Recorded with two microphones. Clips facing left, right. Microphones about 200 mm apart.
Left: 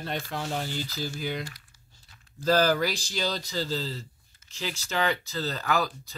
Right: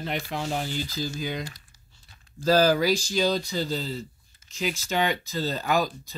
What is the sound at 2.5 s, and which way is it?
Speech, 10° right (ahead or behind).